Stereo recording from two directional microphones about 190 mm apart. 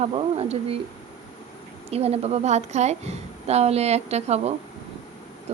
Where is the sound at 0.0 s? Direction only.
30° right (ahead or behind).